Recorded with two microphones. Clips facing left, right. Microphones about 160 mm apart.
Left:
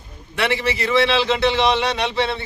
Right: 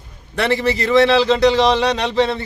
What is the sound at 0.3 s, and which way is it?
A man's voice, 40° right (ahead or behind).